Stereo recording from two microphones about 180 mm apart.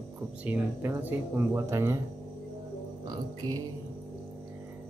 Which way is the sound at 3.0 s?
20° right (ahead or behind).